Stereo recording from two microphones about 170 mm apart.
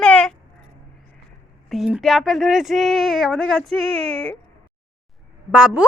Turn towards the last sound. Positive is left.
turn(degrees=-5)  # may be behind; listen again after turning